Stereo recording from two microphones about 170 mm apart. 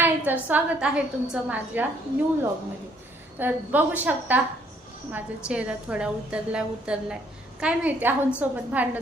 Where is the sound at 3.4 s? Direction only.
10° right (ahead or behind).